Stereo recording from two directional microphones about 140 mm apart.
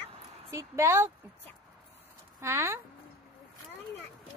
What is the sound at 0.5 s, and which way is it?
Speech, 20° right (ahead or behind).